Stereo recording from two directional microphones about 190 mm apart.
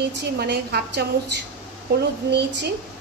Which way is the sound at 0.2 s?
60° right (ahead or behind).